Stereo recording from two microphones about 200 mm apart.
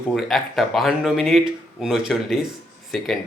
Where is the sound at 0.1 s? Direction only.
Centre (ahead or behind).